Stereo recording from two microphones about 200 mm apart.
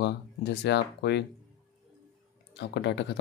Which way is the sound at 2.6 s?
60° left (ahead or behind).